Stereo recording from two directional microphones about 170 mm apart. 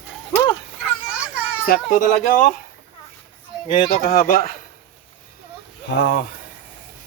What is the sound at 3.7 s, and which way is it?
Speech, 50° left (ahead or behind).